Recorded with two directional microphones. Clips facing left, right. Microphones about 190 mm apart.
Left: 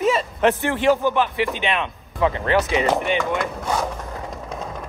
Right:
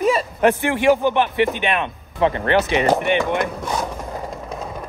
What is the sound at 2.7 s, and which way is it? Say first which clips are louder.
Speech: right 2 dB; 60° right (ahead or behind).